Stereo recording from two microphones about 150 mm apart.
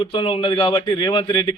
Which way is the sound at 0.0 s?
35° left (ahead or behind).